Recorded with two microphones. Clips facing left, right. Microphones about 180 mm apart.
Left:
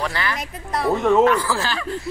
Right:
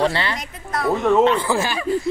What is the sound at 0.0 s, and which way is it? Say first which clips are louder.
Speech: right 5 dB; 30° right (ahead or behind).